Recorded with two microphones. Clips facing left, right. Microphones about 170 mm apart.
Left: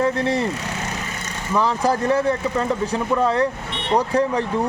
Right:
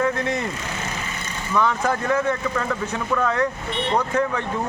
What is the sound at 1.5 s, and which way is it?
Speech, 35° left (ahead or behind).